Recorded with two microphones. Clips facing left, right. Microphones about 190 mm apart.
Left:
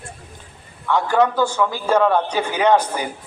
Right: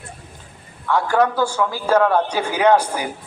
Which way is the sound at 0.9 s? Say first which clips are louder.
Even; 5° right (ahead or behind).